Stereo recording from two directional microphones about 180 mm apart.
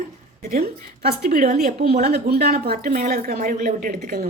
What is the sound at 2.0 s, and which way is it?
A woman's voice, 60° right (ahead or behind).